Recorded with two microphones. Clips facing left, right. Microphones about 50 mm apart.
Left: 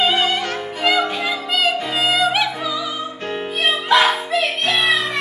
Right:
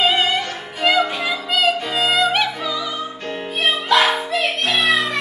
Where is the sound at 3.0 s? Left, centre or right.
Left.